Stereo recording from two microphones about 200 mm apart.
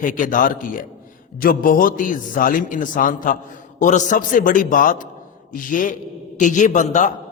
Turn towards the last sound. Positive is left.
turn(degrees=40)  # may be behind; listen again after turning